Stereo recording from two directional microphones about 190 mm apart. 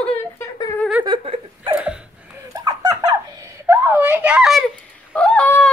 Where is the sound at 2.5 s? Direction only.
20° right (ahead or behind).